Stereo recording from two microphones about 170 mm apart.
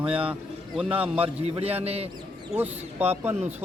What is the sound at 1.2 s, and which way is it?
Speech, 35° right (ahead or behind).